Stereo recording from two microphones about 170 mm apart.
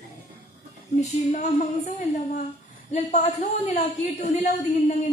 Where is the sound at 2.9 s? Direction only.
45° left (ahead or behind).